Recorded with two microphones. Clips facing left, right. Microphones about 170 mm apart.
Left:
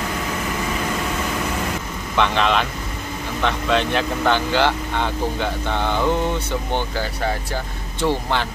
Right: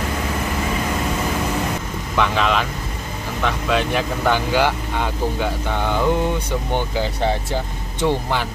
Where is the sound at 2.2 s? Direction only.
5° right (ahead or behind).